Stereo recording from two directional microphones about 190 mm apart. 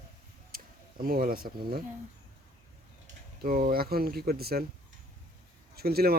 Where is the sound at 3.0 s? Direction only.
45° right (ahead or behind).